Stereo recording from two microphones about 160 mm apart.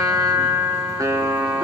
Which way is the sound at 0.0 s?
20° right (ahead or behind).